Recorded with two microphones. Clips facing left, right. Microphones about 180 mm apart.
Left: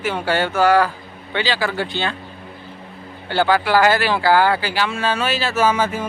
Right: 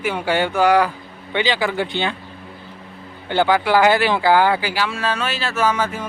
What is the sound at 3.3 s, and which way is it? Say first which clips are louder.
Speech: even; 20° right (ahead or behind).